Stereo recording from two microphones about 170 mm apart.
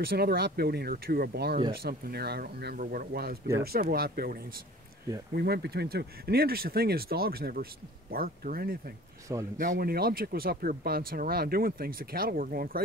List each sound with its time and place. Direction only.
0.0 s speech: 65° right (ahead or behind)
5.3 s speech: 70° right (ahead or behind)